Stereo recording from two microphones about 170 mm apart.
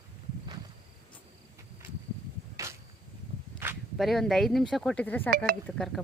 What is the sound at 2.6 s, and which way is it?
Arrow, 20° right (ahead or behind).